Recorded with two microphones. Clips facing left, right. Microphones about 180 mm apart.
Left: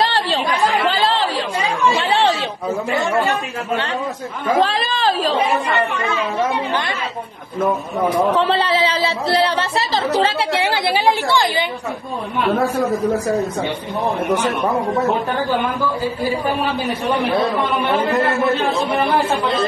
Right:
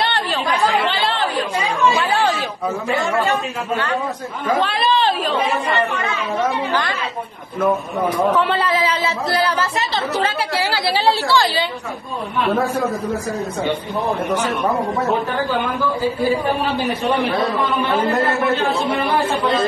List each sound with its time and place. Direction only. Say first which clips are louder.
2.0 s chatter: left 1 dB; 30° left (ahead or behind)
4.6 s speech: even; 90° left
8.4 s speech: left 1 dB; 30° left (ahead or behind)